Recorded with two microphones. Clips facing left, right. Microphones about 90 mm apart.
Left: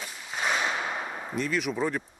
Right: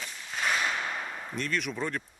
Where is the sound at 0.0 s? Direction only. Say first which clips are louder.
Left 1 dB; 15° left (ahead or behind).